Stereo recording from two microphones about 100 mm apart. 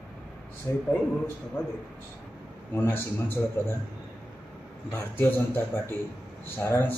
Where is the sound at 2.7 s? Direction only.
20° left (ahead or behind).